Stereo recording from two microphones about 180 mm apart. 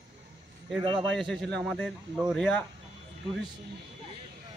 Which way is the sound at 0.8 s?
25° right (ahead or behind).